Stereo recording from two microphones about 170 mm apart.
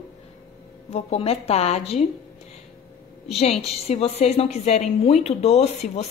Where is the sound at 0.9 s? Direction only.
35° left (ahead or behind).